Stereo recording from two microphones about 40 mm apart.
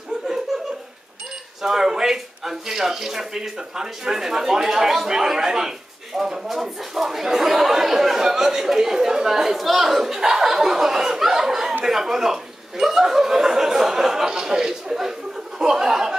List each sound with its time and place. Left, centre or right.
1.6 s speech: centre